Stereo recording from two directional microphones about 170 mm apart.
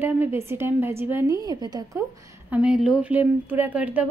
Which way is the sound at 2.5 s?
5° right (ahead or behind).